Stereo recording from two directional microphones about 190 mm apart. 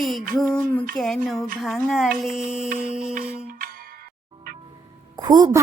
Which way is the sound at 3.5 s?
50° right (ahead or behind).